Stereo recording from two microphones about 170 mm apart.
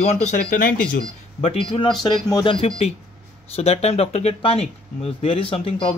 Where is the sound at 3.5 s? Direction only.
35° left (ahead or behind).